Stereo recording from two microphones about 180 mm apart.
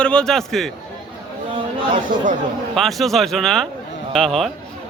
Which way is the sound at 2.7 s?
Centre (ahead or behind).